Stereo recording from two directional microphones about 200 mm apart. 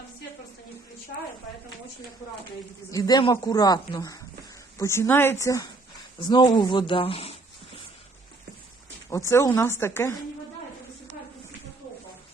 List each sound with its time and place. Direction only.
2.9 s speech: 20° left (ahead or behind)
9.0 s speech: 15° left (ahead or behind)